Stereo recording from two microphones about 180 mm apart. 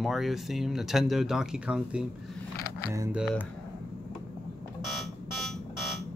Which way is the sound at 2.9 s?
15° right (ahead or behind).